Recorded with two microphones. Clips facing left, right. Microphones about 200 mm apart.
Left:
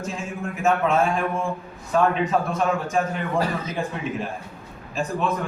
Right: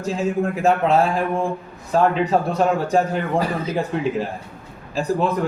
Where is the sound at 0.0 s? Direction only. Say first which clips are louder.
Right 9 dB; 35° right (ahead or behind).